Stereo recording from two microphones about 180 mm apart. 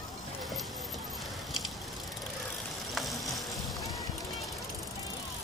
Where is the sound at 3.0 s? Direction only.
Centre (ahead or behind).